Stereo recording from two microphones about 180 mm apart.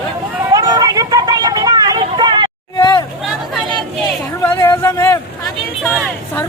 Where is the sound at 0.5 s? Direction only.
20° right (ahead or behind).